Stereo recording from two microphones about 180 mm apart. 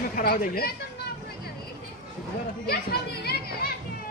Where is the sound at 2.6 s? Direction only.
60° left (ahead or behind).